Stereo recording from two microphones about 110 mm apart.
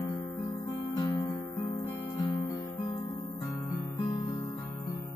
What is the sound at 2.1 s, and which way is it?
Guitar, 40° left (ahead or behind).